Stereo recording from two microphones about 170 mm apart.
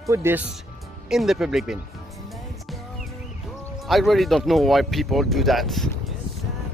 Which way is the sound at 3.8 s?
Centre (ahead or behind).